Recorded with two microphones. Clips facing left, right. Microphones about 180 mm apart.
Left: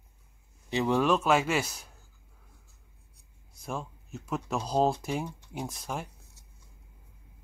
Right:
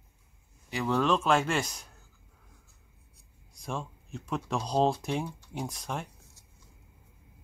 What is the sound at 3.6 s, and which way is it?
Speech, 5° left (ahead or behind).